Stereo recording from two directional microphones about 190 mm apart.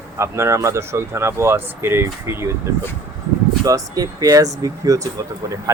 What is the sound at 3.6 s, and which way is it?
Speech, 20° right (ahead or behind).